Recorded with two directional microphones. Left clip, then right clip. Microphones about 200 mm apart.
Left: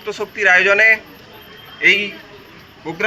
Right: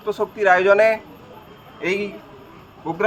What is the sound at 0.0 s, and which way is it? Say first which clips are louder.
Speech: left 2 dB; 50° right (ahead or behind).